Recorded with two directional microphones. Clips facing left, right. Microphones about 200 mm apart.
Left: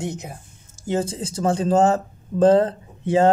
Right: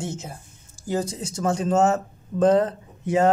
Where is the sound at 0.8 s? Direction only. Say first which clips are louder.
Left 3 dB; 30° left (ahead or behind).